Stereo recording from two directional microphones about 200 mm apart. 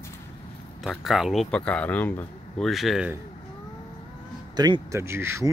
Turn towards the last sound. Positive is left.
turn(degrees=-15)  # may be behind; listen again after turning